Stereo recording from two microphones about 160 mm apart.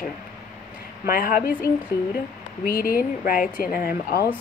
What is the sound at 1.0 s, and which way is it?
Speech, 65° left (ahead or behind).